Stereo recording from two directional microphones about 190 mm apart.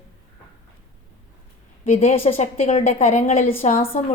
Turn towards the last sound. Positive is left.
turn(degrees=45)  # may be behind; listen again after turning